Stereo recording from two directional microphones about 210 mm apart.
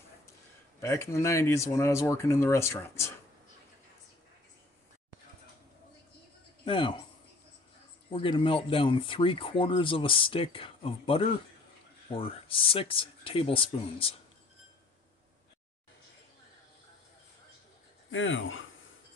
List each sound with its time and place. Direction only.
0.7 s speech: 15° left (ahead or behind)
6.6 s speech: 25° left (ahead or behind)
8.1 s speech: 25° left (ahead or behind)
18.1 s speech: 65° left (ahead or behind)